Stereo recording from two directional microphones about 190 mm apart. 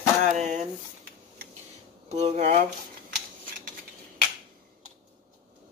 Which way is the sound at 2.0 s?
35° right (ahead or behind).